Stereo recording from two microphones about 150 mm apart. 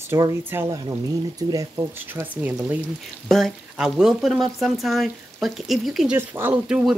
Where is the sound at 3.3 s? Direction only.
Centre (ahead or behind).